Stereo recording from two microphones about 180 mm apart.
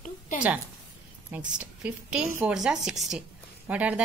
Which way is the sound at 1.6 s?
5° right (ahead or behind).